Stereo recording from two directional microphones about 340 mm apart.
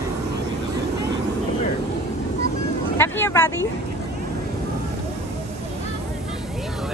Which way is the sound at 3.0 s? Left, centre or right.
Centre.